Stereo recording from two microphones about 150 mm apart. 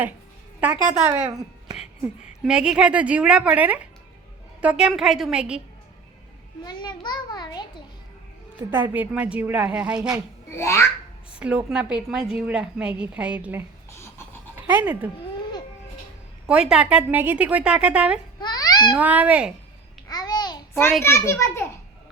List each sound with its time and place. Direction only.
1.0 s a woman's voice: 15° right (ahead or behind)
2.4 s a woman's voice: 5° right (ahead or behind)
6.7 s a child's voice: 30° left (ahead or behind)
8.7 s a woman's voice: 15° right (ahead or behind)
10.5 s a child's voice: 20° left (ahead or behind)
11.3 s a woman's voice: 10° right (ahead or behind)
14.7 s a woman's voice: 10° right (ahead or behind)
15.1 s a sound: 30° left (ahead or behind)
16.5 s a woman's voice: 5° right (ahead or behind)
18.3 s babbling: 25° left (ahead or behind)
18.9 s a woman's voice: 10° right (ahead or behind)
20.1 s babbling: 25° left (ahead or behind)
21.0 s a child's voice: 20° left (ahead or behind)